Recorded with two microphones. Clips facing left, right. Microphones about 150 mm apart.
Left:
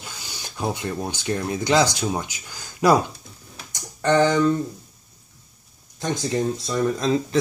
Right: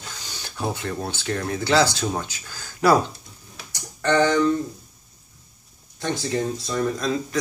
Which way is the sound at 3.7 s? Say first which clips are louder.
Left 1 dB; 20° left (ahead or behind).